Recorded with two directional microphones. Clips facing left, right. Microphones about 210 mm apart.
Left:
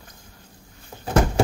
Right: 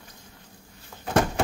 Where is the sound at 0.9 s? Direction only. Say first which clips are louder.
Left 5 dB; 30° left (ahead or behind).